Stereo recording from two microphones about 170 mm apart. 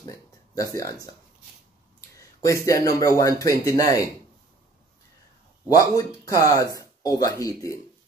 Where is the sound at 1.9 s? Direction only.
20° left (ahead or behind).